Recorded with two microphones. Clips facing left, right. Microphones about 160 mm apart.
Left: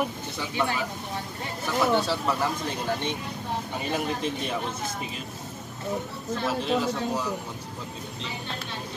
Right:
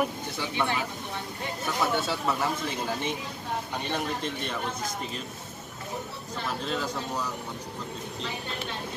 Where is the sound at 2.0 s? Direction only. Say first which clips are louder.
Left 2 dB; centre (ahead or behind).